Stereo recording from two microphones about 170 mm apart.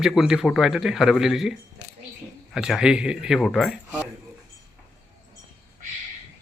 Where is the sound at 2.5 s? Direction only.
5° right (ahead or behind).